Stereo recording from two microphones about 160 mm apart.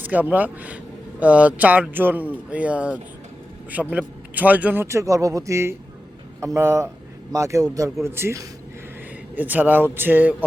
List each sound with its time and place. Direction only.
0.0 s a man's voice: 10° right (ahead or behind)